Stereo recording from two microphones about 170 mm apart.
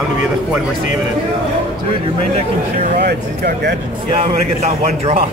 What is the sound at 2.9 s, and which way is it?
Speech, 70° right (ahead or behind).